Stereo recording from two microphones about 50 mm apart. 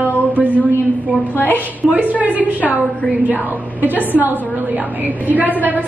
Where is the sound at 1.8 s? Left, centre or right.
Right.